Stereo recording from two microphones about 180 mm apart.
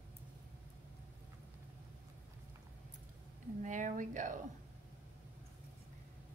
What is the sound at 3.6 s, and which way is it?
Speech, 45° right (ahead or behind).